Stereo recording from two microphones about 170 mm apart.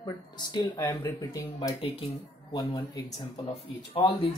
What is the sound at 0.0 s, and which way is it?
Speech, 25° left (ahead or behind).